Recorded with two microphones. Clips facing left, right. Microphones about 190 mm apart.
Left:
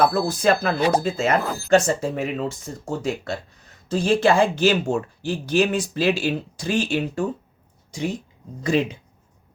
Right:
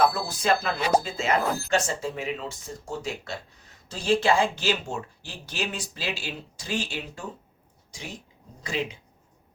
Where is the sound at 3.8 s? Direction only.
50° left (ahead or behind).